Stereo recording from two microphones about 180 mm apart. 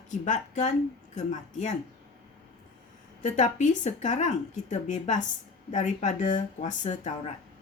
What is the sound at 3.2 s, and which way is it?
Speech, 40° left (ahead or behind).